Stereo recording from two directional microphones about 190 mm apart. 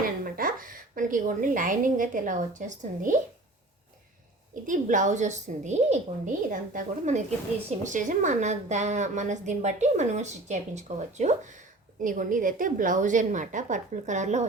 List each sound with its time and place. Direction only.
0.3 s a woman's voice: 50° right (ahead or behind)
4.6 s a woman's voice: 40° right (ahead or behind)